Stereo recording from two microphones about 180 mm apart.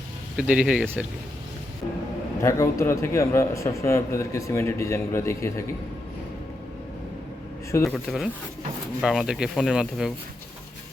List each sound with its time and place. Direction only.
0.3 s speech: 5° right (ahead or behind)
2.4 s a man's voice: 15° left (ahead or behind)
7.9 s speech: centre (ahead or behind)